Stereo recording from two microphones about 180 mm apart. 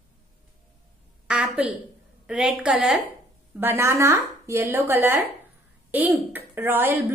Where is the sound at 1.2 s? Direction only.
5° right (ahead or behind).